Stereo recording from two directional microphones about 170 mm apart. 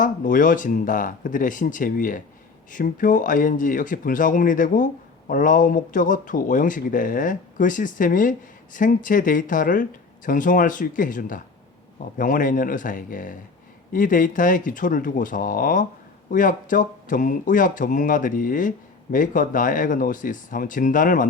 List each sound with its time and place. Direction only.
0.0 s speech: 50° left (ahead or behind)